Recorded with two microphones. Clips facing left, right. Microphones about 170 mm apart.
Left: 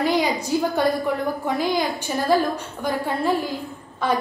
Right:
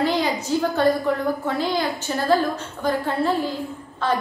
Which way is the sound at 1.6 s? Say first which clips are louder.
Left 1 dB; 15° left (ahead or behind).